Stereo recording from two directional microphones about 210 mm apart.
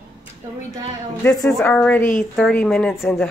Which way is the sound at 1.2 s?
5° left (ahead or behind).